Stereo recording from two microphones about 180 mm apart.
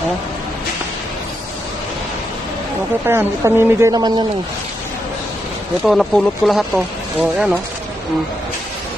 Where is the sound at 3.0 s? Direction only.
15° right (ahead or behind).